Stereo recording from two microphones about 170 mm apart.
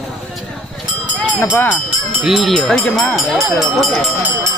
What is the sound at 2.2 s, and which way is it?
Speech, centre (ahead or behind).